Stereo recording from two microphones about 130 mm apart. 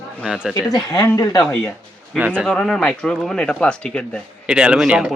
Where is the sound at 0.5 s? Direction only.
30° left (ahead or behind).